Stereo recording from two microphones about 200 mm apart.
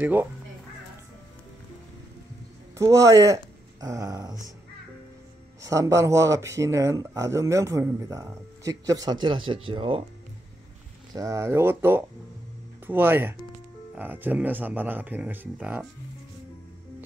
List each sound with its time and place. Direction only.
0.0 s speech: 10° right (ahead or behind)
2.8 s speech: 15° right (ahead or behind)
3.8 s dog: 15° right (ahead or behind)
5.6 s speech: 15° right (ahead or behind)
11.1 s speech: 15° right (ahead or behind)